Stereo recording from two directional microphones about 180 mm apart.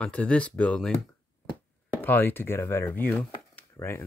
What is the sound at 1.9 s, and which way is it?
Speech, 10° left (ahead or behind).